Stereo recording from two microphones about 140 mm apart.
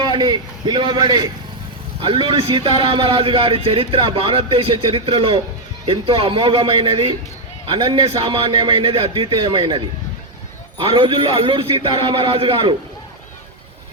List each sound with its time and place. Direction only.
0.0 s a man's voice: 35° right (ahead or behind)